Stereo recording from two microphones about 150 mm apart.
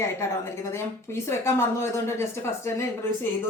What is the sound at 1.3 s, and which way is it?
A woman's voice, 20° left (ahead or behind).